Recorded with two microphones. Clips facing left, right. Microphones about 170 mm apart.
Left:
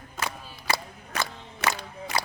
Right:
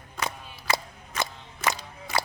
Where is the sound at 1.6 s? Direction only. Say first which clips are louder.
Even; 70° left (ahead or behind).